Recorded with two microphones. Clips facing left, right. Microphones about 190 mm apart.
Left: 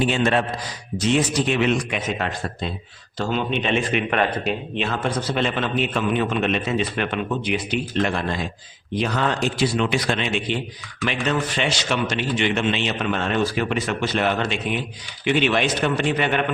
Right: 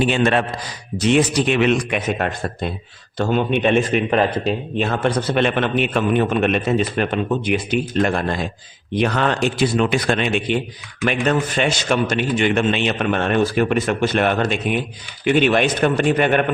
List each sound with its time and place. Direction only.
0.0 s a man's voice: 65° right (ahead or behind); by 4.9 s 35° right (ahead or behind)
4.9 s a man's voice: 65° right (ahead or behind); by 8.4 s 50° right (ahead or behind)
9.0 s a man's voice: 65° right (ahead or behind)